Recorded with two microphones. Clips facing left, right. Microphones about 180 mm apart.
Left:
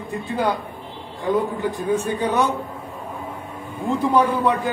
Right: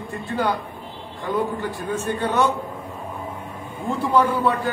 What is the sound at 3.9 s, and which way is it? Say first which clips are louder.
Speech: left 1 dB; 20° left (ahead or behind).